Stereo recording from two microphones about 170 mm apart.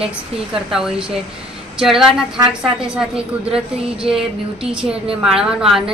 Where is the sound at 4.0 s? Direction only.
5° right (ahead or behind).